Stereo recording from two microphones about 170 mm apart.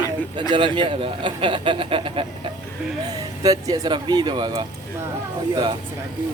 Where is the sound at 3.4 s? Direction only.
20° right (ahead or behind).